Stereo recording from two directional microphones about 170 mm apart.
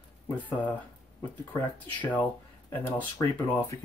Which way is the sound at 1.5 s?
10° left (ahead or behind).